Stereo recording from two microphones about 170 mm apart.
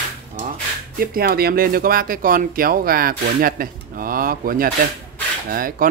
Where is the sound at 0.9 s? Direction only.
60° right (ahead or behind).